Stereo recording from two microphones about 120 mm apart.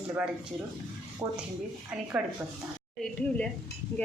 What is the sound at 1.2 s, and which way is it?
Speech, 25° right (ahead or behind).